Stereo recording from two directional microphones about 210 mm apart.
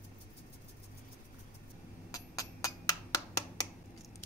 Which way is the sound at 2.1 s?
15° left (ahead or behind).